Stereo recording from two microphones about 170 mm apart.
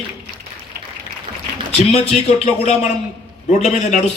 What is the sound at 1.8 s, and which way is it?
A man's voice, 40° left (ahead or behind).